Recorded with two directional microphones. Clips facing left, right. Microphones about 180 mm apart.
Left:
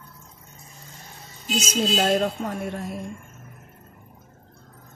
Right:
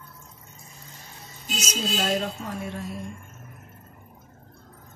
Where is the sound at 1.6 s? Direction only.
55° left (ahead or behind).